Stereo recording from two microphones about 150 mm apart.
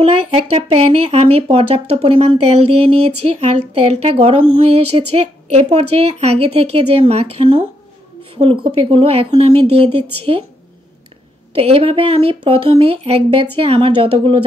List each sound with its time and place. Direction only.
0.0 s speech: 40° right (ahead or behind)
8.7 s speech: 40° right (ahead or behind)
11.5 s speech: 40° right (ahead or behind)